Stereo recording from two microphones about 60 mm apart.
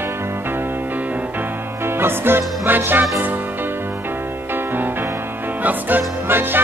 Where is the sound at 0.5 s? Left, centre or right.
Right.